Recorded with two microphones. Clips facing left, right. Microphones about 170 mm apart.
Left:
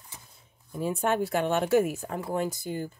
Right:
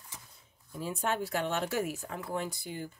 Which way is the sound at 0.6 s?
55° left (ahead or behind).